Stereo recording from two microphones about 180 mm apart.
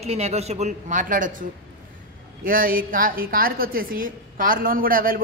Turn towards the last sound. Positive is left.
turn(degrees=-50)  # may be behind; listen again after turning